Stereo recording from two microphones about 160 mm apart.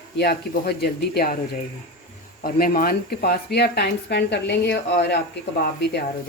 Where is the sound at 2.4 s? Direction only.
65° left (ahead or behind); by 5.2 s 90° left.